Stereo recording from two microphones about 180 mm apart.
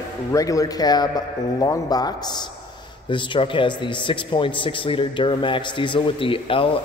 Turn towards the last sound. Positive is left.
turn(degrees=30)  # may be behind; listen again after turning